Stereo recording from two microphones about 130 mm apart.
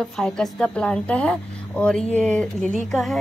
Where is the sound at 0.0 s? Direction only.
5° left (ahead or behind).